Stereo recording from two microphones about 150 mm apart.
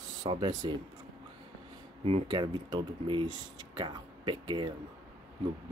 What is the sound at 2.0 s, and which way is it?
Speech, 35° right (ahead or behind).